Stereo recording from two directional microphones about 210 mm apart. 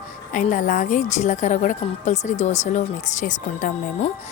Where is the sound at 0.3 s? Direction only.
40° left (ahead or behind).